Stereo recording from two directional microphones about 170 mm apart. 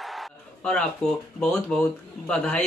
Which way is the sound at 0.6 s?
5° left (ahead or behind).